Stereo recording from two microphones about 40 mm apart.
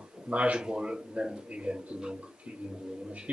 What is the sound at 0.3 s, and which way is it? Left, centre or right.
Speech, right.